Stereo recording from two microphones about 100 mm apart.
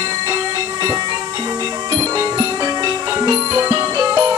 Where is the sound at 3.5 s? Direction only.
25° right (ahead or behind).